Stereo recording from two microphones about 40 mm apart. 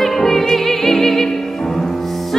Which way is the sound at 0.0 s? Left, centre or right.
Centre.